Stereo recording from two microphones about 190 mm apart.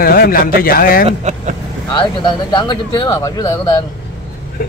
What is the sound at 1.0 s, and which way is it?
Speech, 35° right (ahead or behind).